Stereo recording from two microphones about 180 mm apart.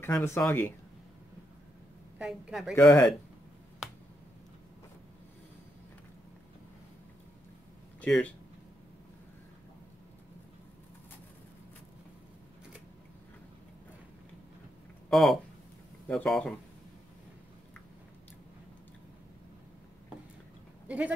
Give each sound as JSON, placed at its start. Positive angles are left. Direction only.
{"t": 0.0, "sound": "speech", "side_deg": 10}
{"t": 2.1, "sound": "a woman's voice", "side_deg": -5}
{"t": 2.7, "sound": "speech", "side_deg": 15}
{"t": 8.0, "sound": "speech", "side_deg": 5}
{"t": 15.0, "sound": "a woman's voice", "side_deg": 0}
{"t": 20.8, "sound": "sheep", "side_deg": -10}